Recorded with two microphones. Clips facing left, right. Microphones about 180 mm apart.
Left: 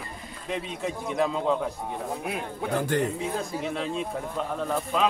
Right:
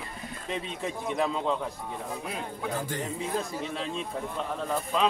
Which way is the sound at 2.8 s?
65° left (ahead or behind).